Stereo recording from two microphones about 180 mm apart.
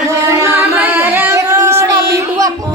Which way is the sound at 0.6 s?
10° right (ahead or behind).